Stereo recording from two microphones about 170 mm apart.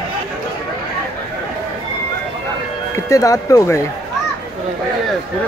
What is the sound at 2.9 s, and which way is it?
Speech, 20° left (ahead or behind).